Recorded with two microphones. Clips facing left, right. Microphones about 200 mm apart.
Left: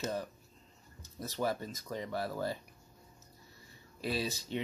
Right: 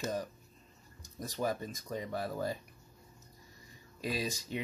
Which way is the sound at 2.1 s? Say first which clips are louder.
Even; 20° right (ahead or behind).